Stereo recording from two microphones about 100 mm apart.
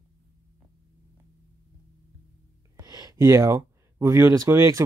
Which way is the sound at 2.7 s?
40° right (ahead or behind).